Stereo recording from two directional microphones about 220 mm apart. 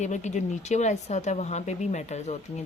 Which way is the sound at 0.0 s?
30° left (ahead or behind).